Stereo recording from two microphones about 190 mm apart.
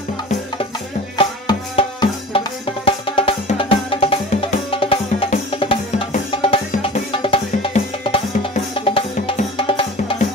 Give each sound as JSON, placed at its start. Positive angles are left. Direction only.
{"t": 1.1, "sound": "music", "side_deg": 25}